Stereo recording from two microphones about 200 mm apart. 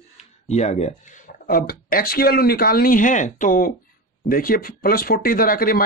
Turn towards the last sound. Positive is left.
turn(degrees=45)  # may be behind; listen again after turning